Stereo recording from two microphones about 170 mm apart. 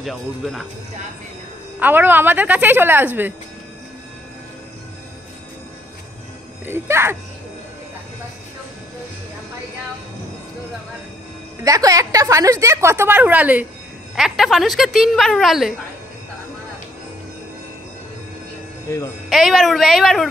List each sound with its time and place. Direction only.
0.0 s a woman's voice: centre (ahead or behind)
1.8 s a woman's voice: 10° right (ahead or behind)
6.6 s a woman's voice: 15° right (ahead or behind)
11.6 s a woman's voice: 20° right (ahead or behind); by 15.7 s centre (ahead or behind)
18.9 s speech: 20° left (ahead or behind)
19.2 s a woman's voice: centre (ahead or behind)